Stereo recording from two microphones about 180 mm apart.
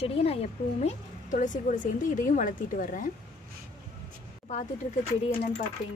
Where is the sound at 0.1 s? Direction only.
35° left (ahead or behind).